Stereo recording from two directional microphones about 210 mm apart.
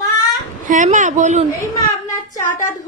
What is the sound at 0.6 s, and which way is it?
Speech, 35° right (ahead or behind).